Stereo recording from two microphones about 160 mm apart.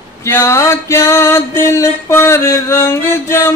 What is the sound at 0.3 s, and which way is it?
Mantra, 15° left (ahead or behind).